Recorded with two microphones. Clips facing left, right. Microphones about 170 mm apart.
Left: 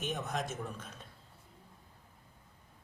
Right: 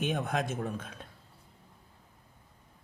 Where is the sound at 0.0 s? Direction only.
60° right (ahead or behind).